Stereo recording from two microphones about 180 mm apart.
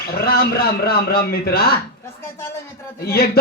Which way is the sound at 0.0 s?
60° left (ahead or behind).